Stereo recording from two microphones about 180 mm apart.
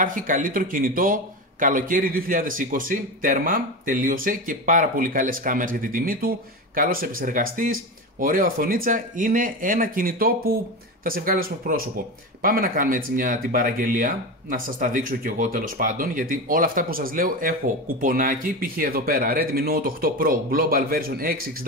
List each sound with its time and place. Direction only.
0.0 s speech: 50° right (ahead or behind)